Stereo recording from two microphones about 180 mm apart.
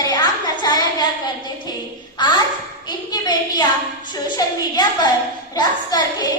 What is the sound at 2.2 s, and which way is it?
A woman's voice, 25° left (ahead or behind).